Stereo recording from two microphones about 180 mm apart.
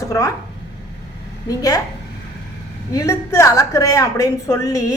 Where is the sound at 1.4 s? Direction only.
20° left (ahead or behind).